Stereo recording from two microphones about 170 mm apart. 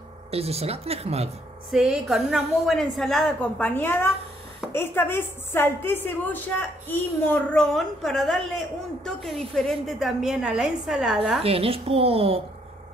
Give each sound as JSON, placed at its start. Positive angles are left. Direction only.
{"t": 0.3, "sound": "speech", "side_deg": -35}
{"t": 1.7, "sound": "a woman's voice", "side_deg": 0}
{"t": 11.4, "sound": "speech", "side_deg": -35}